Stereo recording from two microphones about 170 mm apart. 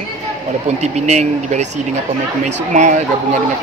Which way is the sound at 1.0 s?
45° right (ahead or behind).